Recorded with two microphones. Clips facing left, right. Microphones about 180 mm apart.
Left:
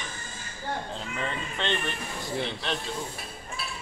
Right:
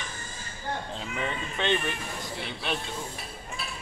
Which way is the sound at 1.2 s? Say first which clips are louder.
Right 2 dB; 10° right (ahead or behind).